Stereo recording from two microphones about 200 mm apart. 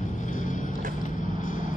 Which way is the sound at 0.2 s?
40° left (ahead or behind).